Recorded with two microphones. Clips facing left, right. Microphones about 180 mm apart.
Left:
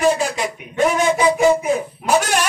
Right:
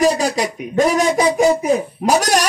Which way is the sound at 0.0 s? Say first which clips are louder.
Right 2 dB; 40° right (ahead or behind).